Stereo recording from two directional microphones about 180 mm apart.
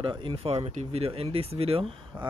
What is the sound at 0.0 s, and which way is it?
Speech, 30° right (ahead or behind).